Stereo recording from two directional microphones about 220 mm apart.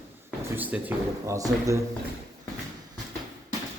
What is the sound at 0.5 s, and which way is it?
Speech, 10° right (ahead or behind).